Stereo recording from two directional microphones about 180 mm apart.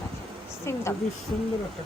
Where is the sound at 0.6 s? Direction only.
15° left (ahead or behind).